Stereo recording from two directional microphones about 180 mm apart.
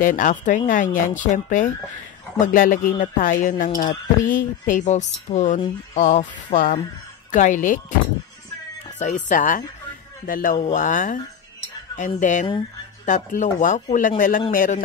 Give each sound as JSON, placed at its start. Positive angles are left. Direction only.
{"t": 0.0, "sound": "speech", "side_deg": 45}
{"t": 8.9, "sound": "speech", "side_deg": 45}